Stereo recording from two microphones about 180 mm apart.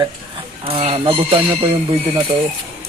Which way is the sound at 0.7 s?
35° right (ahead or behind).